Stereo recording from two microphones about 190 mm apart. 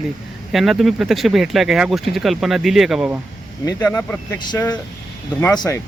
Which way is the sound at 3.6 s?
15° left (ahead or behind).